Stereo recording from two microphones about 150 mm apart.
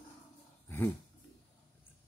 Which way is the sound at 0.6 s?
15° left (ahead or behind).